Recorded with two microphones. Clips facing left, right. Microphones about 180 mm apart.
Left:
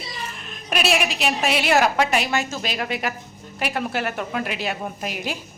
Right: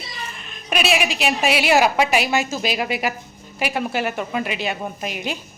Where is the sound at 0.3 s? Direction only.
Centre (ahead or behind).